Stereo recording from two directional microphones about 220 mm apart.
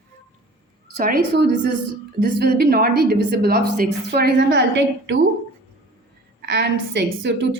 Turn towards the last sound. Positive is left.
turn(degrees=-50)  # may be behind; listen again after turning